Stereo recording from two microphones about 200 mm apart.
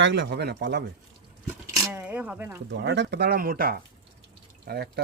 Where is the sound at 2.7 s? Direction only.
60° right (ahead or behind).